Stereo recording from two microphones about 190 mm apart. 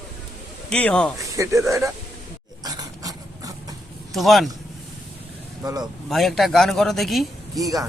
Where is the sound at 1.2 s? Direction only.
15° right (ahead or behind).